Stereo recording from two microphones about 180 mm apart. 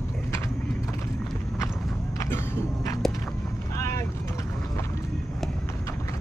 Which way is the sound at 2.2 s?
15° left (ahead or behind).